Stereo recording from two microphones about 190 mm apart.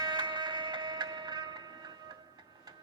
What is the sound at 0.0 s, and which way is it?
Music, 20° right (ahead or behind).